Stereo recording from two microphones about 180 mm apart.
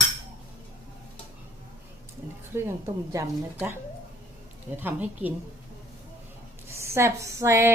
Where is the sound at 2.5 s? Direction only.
15° right (ahead or behind).